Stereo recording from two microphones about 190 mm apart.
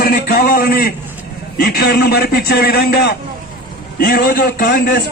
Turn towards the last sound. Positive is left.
turn(degrees=50)  # may be behind; listen again after turning